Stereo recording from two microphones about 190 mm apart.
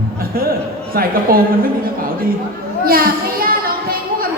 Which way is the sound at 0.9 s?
50° right (ahead or behind).